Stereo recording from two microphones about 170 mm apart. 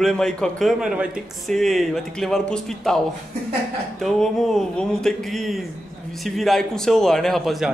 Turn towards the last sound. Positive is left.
turn(degrees=0)  # may be behind; listen again after turning